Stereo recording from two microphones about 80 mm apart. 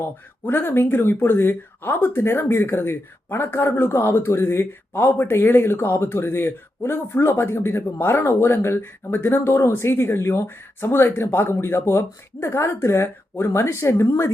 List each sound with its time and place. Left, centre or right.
0.0 s speech: left